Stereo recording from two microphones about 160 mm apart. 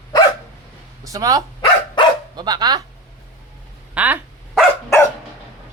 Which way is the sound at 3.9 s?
10° right (ahead or behind).